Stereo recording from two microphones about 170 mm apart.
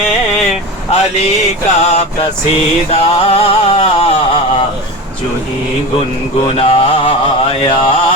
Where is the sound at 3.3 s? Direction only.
35° left (ahead or behind).